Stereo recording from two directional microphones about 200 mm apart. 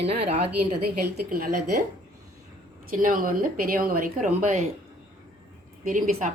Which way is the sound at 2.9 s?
45° right (ahead or behind).